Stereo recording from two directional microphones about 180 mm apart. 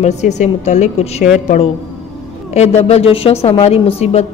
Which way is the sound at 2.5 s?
35° left (ahead or behind).